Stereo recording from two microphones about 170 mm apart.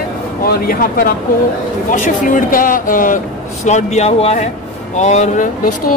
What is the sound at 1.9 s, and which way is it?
A man's voice, 50° left (ahead or behind).